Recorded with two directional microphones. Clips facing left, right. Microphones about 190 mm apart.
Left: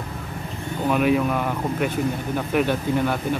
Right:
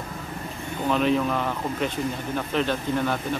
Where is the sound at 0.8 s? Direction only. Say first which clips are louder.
Left 2 dB; 10° left (ahead or behind).